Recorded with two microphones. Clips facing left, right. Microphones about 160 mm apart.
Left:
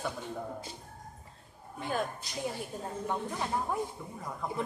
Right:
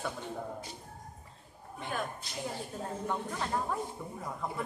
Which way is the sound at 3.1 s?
15° left (ahead or behind).